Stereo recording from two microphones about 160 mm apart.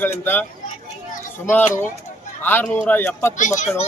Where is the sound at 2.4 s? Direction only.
10° left (ahead or behind).